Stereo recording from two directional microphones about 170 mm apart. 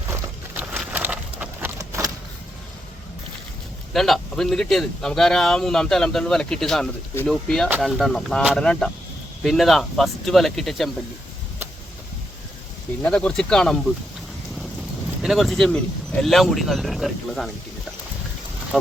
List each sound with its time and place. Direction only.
0.1 s a sound: 10° right (ahead or behind)
3.9 s speech: centre (ahead or behind)
13.0 s speech: 5° left (ahead or behind)
15.2 s speech: centre (ahead or behind)
18.7 s speech: centre (ahead or behind)